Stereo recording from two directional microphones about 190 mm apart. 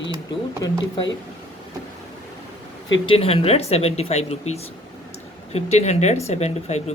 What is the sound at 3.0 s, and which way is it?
Speech, 30° left (ahead or behind).